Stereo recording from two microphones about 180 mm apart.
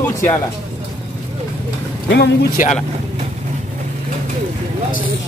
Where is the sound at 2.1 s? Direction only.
70° left (ahead or behind).